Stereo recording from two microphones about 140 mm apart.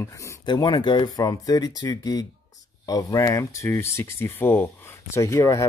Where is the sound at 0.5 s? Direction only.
35° left (ahead or behind).